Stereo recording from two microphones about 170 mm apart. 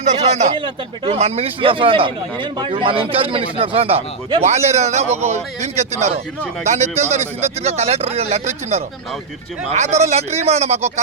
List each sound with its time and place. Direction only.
0.0 s speech: 40° right (ahead or behind)
0.5 s a man's voice: 30° right (ahead or behind)